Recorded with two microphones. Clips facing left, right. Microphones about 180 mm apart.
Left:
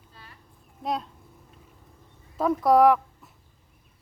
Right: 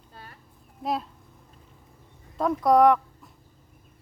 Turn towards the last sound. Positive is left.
turn(degrees=5)  # may be behind; listen again after turning